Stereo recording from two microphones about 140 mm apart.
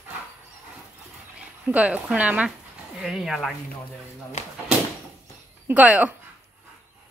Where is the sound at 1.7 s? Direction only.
10° right (ahead or behind).